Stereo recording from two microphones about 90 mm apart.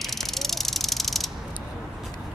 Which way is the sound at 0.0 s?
Centre (ahead or behind).